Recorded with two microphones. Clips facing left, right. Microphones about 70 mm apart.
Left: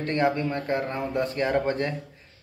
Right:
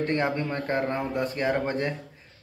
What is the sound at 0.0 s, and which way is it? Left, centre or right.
Speech, right.